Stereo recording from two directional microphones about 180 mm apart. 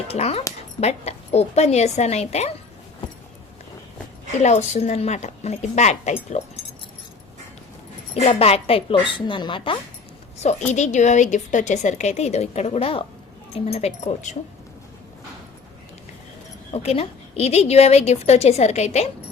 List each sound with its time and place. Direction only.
0.1 s a woman's voice: 35° left (ahead or behind)
4.4 s a woman's voice: 40° left (ahead or behind)
8.1 s a woman's voice: 35° left (ahead or behind)
10.7 s a woman's voice: 40° left (ahead or behind)
16.7 s a woman's voice: 35° left (ahead or behind)